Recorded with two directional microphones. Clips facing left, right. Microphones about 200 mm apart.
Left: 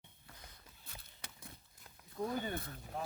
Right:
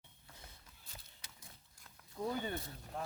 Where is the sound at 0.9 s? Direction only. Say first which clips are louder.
Left 4 dB; 60° left (ahead or behind).